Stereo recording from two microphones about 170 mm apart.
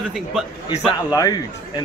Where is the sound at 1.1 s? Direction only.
25° left (ahead or behind).